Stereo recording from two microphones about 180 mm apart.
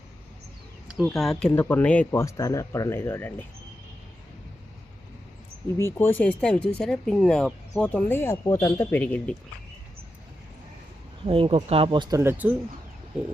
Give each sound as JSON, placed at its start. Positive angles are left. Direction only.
{"t": 1.0, "sound": "speech", "side_deg": 0}
{"t": 5.7, "sound": "speech", "side_deg": 15}
{"t": 11.3, "sound": "speech", "side_deg": -30}
{"t": 12.2, "sound": "speech", "side_deg": -10}